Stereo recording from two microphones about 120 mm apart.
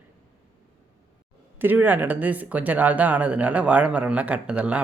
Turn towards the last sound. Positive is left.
turn(degrees=-10)  # may be behind; listen again after turning